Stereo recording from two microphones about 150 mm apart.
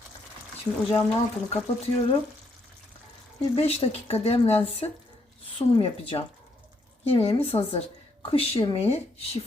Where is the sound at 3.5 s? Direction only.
40° left (ahead or behind).